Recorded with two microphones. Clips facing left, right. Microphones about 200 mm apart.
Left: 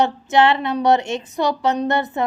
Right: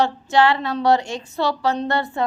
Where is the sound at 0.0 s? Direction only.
20° left (ahead or behind).